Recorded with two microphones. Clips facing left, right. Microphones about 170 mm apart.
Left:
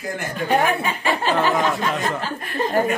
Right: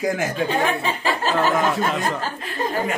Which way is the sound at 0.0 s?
90° right.